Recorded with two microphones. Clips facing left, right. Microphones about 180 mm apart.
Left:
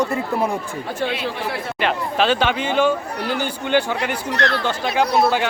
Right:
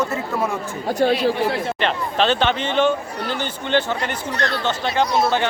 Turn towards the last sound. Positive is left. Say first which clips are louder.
# left 1 dB
turn(degrees=5)  # may be behind; listen again after turning